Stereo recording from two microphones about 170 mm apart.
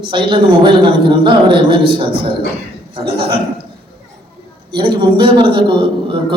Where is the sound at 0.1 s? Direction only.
30° right (ahead or behind).